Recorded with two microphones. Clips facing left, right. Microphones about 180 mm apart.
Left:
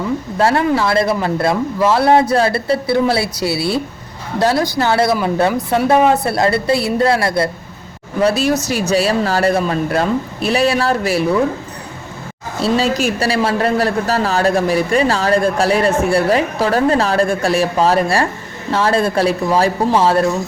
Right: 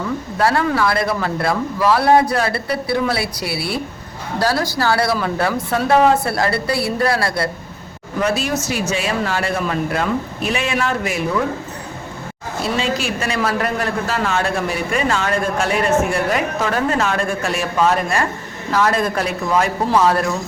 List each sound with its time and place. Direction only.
0.3 s speech: 25° left (ahead or behind)
8.2 s a man's voice: 40° left (ahead or behind)
12.6 s a man's voice: 35° left (ahead or behind)